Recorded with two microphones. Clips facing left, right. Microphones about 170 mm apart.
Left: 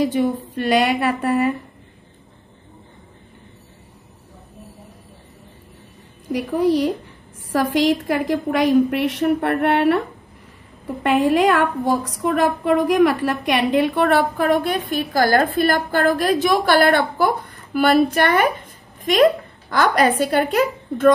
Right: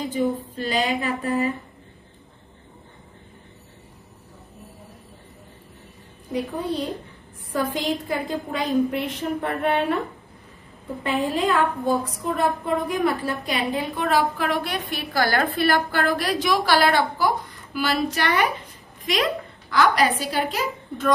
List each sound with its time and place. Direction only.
0.0 s a woman's voice: 80° left
6.3 s a woman's voice: 75° left (ahead or behind)
11.0 s a woman's voice: 75° left (ahead or behind); by 21.1 s 55° left (ahead or behind)